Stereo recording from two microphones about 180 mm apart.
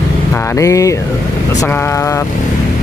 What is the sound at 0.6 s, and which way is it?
Speech, 15° left (ahead or behind).